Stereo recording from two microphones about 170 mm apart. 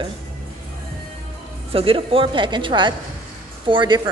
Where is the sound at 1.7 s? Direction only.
35° right (ahead or behind).